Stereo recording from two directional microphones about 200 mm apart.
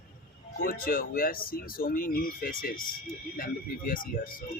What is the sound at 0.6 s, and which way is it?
A man's voice, 45° left (ahead or behind).